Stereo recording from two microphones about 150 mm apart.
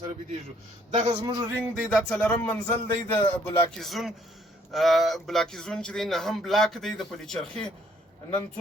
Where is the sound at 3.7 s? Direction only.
Centre (ahead or behind).